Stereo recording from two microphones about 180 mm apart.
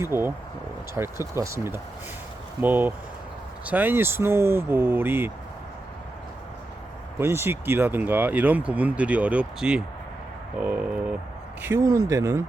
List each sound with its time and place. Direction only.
0.0 s speech: 15° right (ahead or behind)
7.2 s speech: 15° right (ahead or behind)